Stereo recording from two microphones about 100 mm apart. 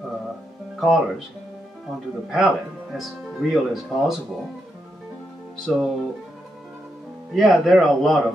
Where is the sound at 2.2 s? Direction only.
5° right (ahead or behind).